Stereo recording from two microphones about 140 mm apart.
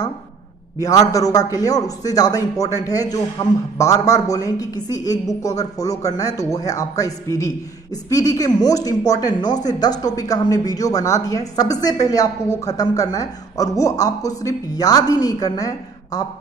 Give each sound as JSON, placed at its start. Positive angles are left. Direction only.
{"t": 0.7, "sound": "speech", "side_deg": 25}